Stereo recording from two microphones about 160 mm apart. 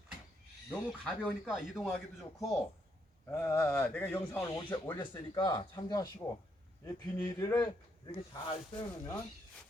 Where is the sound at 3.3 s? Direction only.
20° left (ahead or behind).